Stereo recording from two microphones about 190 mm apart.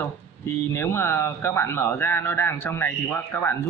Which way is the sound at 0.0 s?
10° left (ahead or behind).